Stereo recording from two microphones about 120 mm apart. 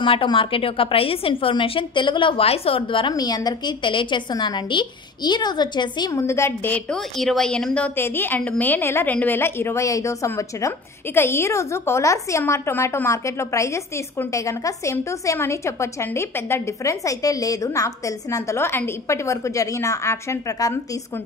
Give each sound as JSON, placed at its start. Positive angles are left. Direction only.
{"t": 0.0, "sound": "a woman's voice", "side_deg": 45}
{"t": 6.1, "sound": "a woman's voice", "side_deg": 25}
{"t": 6.9, "sound": "a woman's voice", "side_deg": 0}